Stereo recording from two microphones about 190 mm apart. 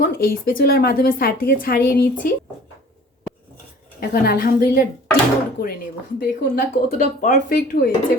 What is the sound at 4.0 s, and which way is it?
Speech, 50° left (ahead or behind).